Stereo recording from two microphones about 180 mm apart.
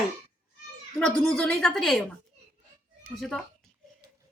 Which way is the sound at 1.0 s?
5° left (ahead or behind).